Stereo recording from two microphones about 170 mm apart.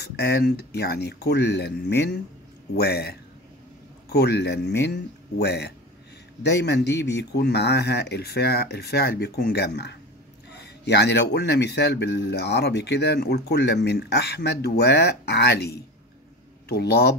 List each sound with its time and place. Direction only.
0.0 s a man's voice: 70° left (ahead or behind)